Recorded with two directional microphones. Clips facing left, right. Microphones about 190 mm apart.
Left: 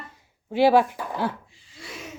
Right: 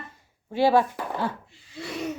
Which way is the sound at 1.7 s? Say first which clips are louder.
Right 7 dB; 65° right (ahead or behind).